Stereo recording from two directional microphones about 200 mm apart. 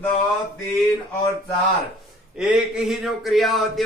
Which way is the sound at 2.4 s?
5° right (ahead or behind).